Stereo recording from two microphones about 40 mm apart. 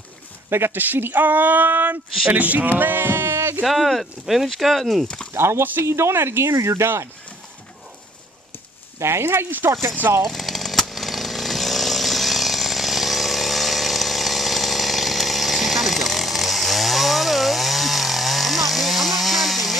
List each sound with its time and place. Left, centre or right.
0.5 s speech: right
0.7 s speech: right
3.6 s speech: centre
5.0 s speech: left
5.3 s speech: right
9.0 s speech: right
9.5 s speech: right
10.2 s chainsaw: centre